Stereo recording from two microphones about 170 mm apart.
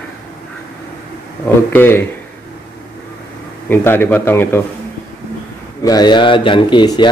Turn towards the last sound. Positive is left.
turn(degrees=25)  # may be behind; listen again after turning